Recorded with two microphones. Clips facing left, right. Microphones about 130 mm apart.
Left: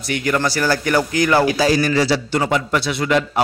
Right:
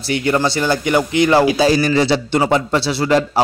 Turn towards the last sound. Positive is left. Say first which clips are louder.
# right 3 dB
turn(degrees=-30)  # may be behind; listen again after turning